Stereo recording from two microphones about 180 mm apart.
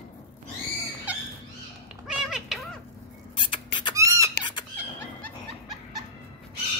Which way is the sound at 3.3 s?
25° left (ahead or behind).